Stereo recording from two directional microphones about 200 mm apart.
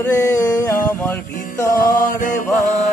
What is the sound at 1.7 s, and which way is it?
Mantra, 45° left (ahead or behind).